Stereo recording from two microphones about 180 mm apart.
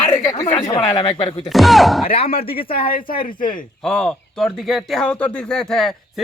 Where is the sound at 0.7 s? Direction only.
25° left (ahead or behind).